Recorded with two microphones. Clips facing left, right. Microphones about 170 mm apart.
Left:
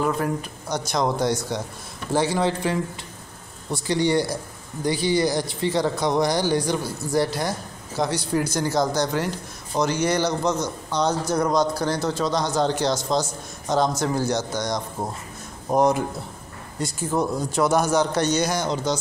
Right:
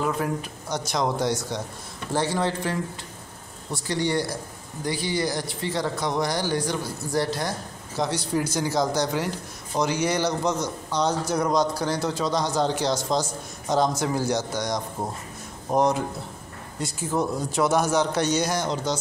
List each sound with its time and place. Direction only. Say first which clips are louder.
0.0 s speech: left 2 dB; centre (ahead or behind)
2.1 s speech: left 3 dB; 15° left (ahead or behind)
3.8 s speech: left 4 dB; 15° left (ahead or behind)
8.0 s a man's voice: left 2 dB; centre (ahead or behind)
15.7 s speech: left 2 dB; 5° left (ahead or behind)